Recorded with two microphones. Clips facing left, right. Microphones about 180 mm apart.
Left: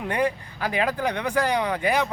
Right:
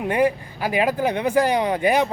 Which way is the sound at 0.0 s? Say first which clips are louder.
Right 5 dB; 15° right (ahead or behind).